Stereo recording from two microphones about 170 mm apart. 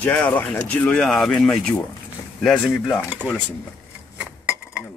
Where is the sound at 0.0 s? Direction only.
5° left (ahead or behind).